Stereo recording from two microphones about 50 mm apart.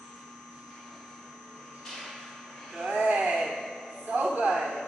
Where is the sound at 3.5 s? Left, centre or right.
Centre.